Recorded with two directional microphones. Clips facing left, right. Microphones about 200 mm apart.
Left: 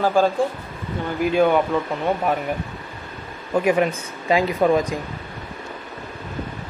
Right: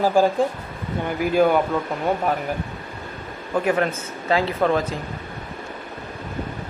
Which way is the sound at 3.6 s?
10° left (ahead or behind).